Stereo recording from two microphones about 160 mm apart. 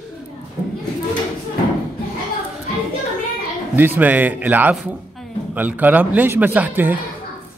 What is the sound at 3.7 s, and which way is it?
A man's voice, 10° right (ahead or behind).